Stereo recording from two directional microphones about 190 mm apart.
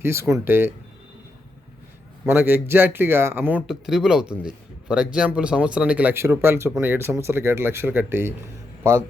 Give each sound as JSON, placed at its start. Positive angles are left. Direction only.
{"t": 0.0, "sound": "speech", "side_deg": -15}
{"t": 2.2, "sound": "speech", "side_deg": -10}